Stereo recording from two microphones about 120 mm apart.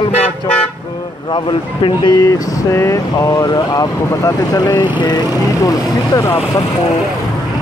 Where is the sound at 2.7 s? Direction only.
25° left (ahead or behind).